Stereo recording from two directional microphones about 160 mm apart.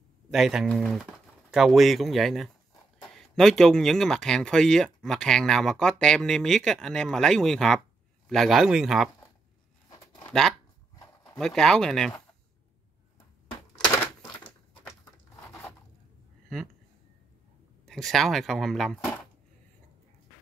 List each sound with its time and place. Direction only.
0.3 s speech: 5° right (ahead or behind)
11.3 s speech: 5° left (ahead or behind)
17.8 s speech: centre (ahead or behind)